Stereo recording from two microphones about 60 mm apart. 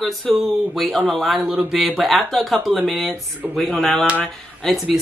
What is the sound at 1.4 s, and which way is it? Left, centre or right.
Speech, right.